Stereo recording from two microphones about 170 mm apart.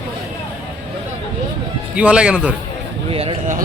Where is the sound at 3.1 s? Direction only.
35° right (ahead or behind).